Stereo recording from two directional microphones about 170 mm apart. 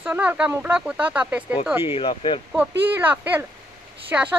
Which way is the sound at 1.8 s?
30° left (ahead or behind).